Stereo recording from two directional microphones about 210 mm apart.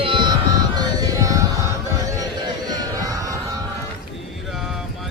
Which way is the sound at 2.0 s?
15° right (ahead or behind).